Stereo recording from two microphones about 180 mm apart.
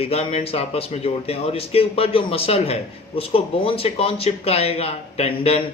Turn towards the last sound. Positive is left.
turn(degrees=35)  # may be behind; listen again after turning